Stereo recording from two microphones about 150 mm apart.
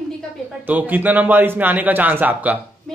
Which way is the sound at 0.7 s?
10° right (ahead or behind).